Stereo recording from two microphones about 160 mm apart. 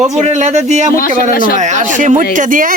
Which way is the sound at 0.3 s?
50° right (ahead or behind).